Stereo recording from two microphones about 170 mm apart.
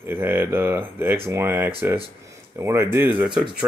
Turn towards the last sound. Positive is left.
turn(degrees=-5)  # may be behind; listen again after turning